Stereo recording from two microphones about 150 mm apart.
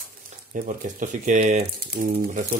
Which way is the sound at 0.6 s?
55° right (ahead or behind).